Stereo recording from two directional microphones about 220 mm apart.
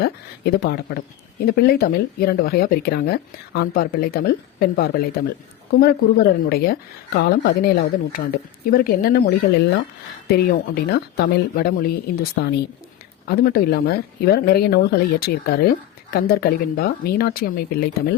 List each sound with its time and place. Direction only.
0.0 s speech: 45° left (ahead or behind)